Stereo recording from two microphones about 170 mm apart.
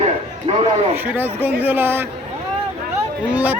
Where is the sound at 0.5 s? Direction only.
40° right (ahead or behind).